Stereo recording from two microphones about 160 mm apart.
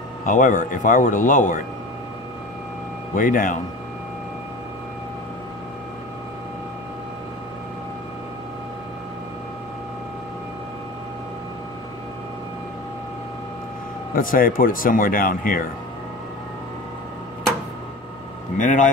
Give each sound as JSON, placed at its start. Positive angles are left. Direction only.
{"t": 0.2, "sound": "speech", "side_deg": 55}
{"t": 3.2, "sound": "speech", "side_deg": 60}
{"t": 14.1, "sound": "speech", "side_deg": 60}
{"t": 18.6, "sound": "a man's voice", "side_deg": 55}